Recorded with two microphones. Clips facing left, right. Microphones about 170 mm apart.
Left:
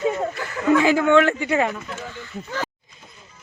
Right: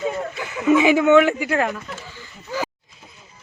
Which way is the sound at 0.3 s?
15° right (ahead or behind).